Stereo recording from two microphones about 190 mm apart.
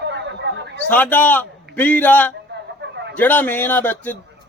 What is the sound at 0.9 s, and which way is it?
A man's voice, 10° left (ahead or behind).